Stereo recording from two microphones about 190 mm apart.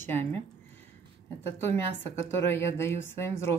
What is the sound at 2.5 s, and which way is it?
Speech, 10° left (ahead or behind).